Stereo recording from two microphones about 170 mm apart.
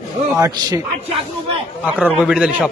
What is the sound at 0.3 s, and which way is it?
Speech, 20° right (ahead or behind).